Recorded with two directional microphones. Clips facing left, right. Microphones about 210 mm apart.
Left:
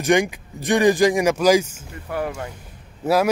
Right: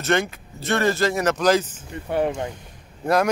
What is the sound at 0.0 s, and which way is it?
A man's voice, 15° left (ahead or behind).